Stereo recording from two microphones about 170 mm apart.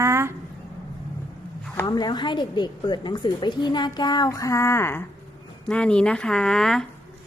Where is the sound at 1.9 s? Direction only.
25° left (ahead or behind); by 6.8 s 5° left (ahead or behind).